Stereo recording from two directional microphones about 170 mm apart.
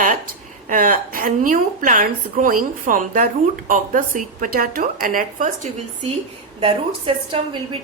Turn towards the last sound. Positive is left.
turn(degrees=-30)  # may be behind; listen again after turning